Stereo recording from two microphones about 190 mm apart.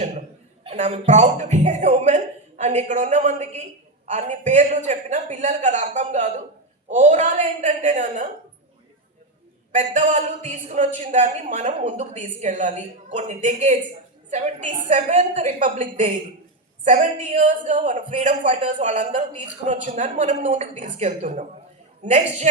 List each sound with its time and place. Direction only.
0.6 s speech: 30° right (ahead or behind)
9.7 s speech: 40° right (ahead or behind)